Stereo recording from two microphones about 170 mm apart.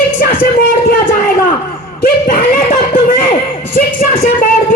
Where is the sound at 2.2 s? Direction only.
55° left (ahead or behind).